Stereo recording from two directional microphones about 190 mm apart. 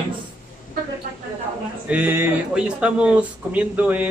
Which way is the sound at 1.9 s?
10° right (ahead or behind).